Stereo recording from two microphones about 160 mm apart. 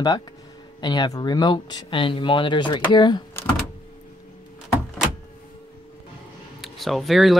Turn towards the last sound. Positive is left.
turn(degrees=0)  # may be behind; listen again after turning